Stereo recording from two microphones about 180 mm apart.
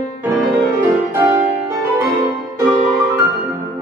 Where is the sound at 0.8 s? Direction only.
15° right (ahead or behind).